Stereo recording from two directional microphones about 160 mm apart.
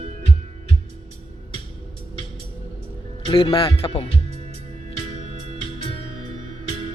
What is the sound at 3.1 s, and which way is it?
Speech, 30° left (ahead or behind).